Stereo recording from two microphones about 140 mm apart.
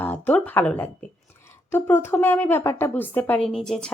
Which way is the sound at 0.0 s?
10° left (ahead or behind).